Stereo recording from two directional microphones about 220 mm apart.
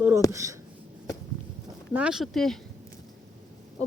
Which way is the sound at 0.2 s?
15° left (ahead or behind).